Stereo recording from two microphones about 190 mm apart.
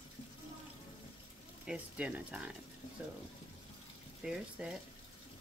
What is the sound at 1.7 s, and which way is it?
Speech, 5° right (ahead or behind).